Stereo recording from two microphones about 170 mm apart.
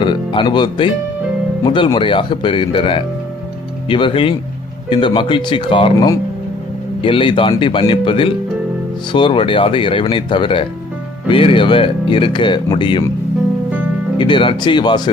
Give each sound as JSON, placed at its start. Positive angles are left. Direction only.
{"t": 0.0, "sound": "speech", "side_deg": 30}
{"t": 14.2, "sound": "speech", "side_deg": 30}